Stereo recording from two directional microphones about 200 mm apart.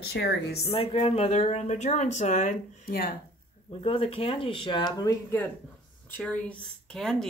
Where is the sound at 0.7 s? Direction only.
25° left (ahead or behind); by 3.1 s 45° left (ahead or behind).